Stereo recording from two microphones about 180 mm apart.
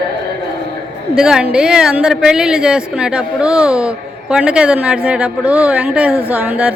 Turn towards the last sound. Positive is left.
turn(degrees=-5)  # may be behind; listen again after turning